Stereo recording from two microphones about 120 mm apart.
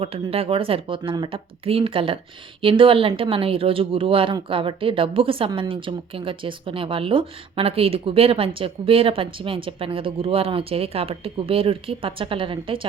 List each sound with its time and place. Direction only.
0.0 s a woman's voice: 55° right (ahead or behind)